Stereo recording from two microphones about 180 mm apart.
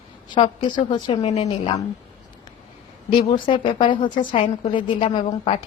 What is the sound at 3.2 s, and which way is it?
Speech, 30° left (ahead or behind).